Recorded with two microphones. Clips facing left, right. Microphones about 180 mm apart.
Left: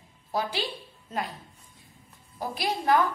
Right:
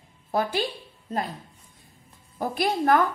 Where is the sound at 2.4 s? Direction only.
50° right (ahead or behind).